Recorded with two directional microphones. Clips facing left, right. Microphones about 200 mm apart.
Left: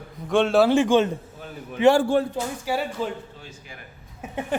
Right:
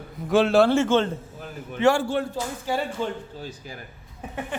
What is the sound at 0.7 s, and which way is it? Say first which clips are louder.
A man's voice: left 2 dB; 15° left (ahead or behind).